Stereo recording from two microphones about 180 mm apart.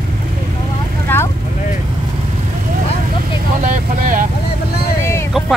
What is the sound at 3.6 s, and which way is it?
Speech, 45° right (ahead or behind).